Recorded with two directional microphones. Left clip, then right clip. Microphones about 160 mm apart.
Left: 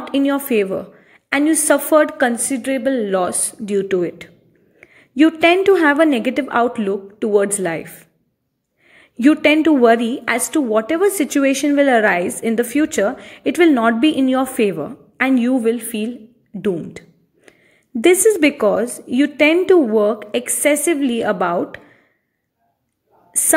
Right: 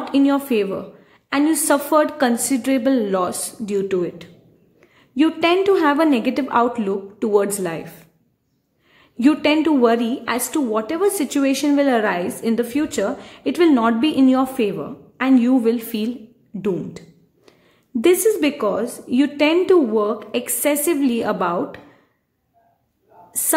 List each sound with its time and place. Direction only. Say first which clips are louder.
0.2 s a woman's voice: left 1 dB; 20° left (ahead or behind)
3.2 s a woman's voice: left 2 dB; 20° left (ahead or behind)
18.3 s a woman's voice: left 5 dB; 30° left (ahead or behind)